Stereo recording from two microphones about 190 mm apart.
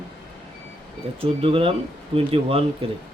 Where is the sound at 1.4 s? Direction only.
30° right (ahead or behind).